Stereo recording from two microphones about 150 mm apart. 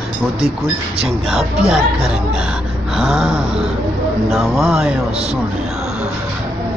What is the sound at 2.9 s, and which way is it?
Speech, centre (ahead or behind).